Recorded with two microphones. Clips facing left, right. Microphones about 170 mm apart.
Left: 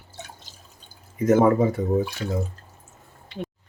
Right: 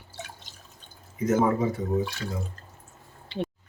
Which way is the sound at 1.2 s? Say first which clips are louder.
Left 6 dB; 50° left (ahead or behind).